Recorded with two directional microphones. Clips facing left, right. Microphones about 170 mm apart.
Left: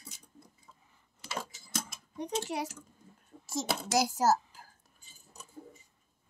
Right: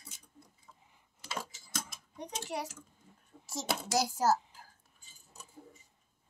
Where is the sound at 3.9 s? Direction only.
90° left.